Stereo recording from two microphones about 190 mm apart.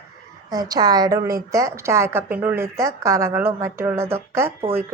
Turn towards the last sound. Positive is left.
turn(degrees=-15)  # may be behind; listen again after turning